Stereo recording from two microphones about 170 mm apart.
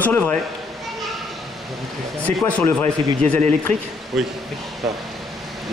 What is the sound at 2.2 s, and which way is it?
Speech, 10° left (ahead or behind).